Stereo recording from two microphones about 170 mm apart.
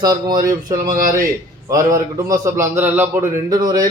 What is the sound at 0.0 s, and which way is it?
Speech, 20° right (ahead or behind).